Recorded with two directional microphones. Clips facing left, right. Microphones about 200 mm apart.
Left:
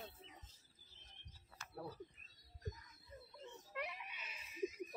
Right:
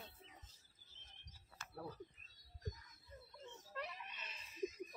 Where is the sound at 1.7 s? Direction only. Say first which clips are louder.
Left 1 dB; 10° left (ahead or behind).